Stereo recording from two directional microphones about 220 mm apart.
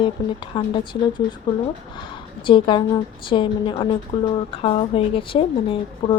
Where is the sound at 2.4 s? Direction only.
20° left (ahead or behind).